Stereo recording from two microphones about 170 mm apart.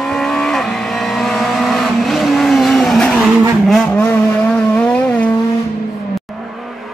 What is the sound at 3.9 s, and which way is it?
Vehicle, 10° left (ahead or behind).